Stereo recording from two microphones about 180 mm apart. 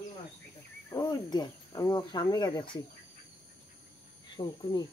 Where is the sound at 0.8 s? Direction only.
20° left (ahead or behind).